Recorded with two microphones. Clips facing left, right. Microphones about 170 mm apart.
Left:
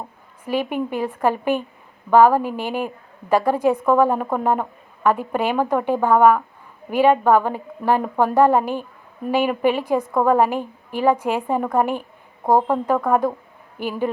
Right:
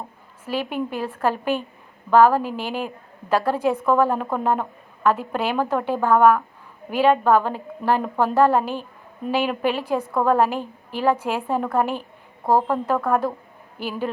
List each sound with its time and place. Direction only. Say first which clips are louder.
0.4 s a woman's voice: left 3 dB; 15° left (ahead or behind)